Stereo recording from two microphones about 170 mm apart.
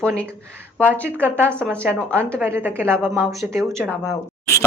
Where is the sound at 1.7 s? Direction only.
15° right (ahead or behind).